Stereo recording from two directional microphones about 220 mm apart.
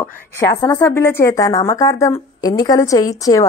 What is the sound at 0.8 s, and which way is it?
A woman's voice, 10° left (ahead or behind).